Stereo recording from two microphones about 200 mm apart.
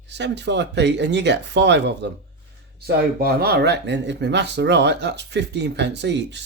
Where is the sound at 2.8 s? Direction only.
50° right (ahead or behind).